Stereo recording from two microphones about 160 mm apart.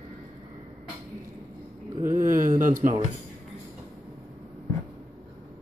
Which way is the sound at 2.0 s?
55° right (ahead or behind).